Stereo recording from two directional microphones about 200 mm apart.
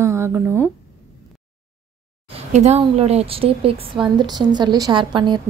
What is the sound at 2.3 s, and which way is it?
A woman's voice, 35° right (ahead or behind).